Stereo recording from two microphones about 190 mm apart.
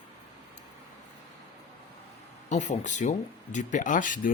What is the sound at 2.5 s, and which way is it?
Speech, 40° left (ahead or behind).